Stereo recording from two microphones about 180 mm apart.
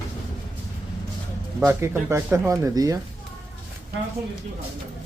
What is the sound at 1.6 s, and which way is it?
Speech, 15° right (ahead or behind).